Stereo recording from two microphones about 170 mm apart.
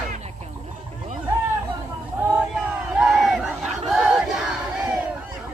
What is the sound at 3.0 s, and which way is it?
Battle cry, centre (ahead or behind).